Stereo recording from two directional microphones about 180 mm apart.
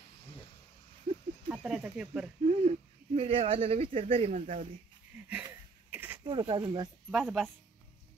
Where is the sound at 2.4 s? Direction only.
40° right (ahead or behind).